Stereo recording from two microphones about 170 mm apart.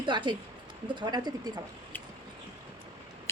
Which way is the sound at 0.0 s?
25° right (ahead or behind).